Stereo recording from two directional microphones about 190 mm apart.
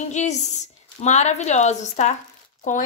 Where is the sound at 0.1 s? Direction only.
35° left (ahead or behind).